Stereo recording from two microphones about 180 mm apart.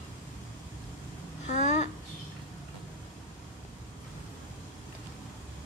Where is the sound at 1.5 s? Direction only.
40° left (ahead or behind).